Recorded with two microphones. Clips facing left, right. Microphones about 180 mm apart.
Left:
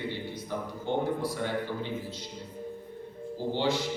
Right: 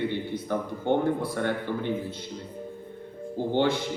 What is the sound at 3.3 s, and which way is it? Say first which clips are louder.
Speech: right 4 dB; 55° right (ahead or behind).